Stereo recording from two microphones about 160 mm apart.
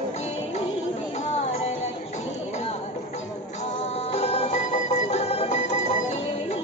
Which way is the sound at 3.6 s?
45° left (ahead or behind).